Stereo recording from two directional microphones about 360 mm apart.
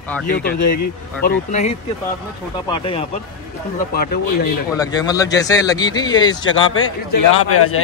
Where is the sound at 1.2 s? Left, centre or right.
Centre.